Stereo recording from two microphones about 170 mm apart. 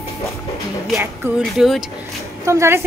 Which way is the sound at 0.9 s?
15° right (ahead or behind).